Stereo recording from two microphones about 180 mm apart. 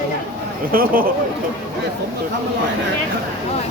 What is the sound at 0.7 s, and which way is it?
Speech, 55° right (ahead or behind).